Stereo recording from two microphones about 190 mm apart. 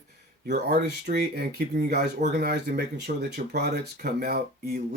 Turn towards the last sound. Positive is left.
turn(degrees=-55)  # may be behind; listen again after turning